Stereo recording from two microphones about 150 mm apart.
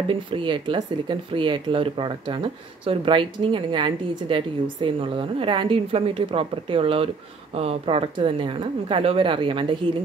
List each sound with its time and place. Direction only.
0.1 s speech: 35° right (ahead or behind)